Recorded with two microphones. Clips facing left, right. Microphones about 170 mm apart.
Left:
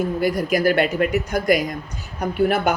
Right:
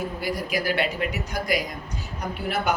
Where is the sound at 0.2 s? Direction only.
50° left (ahead or behind).